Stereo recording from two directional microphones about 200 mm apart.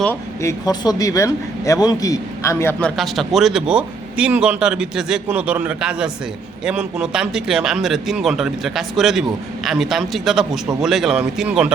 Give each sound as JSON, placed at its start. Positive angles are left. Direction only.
{"t": 0.0, "sound": "a man's voice", "side_deg": 10}
{"t": 2.9, "sound": "a man's voice", "side_deg": 0}